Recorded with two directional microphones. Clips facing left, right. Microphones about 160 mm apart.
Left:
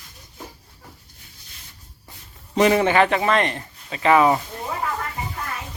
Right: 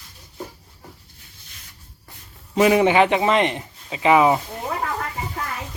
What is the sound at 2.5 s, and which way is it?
A man's voice, 5° right (ahead or behind).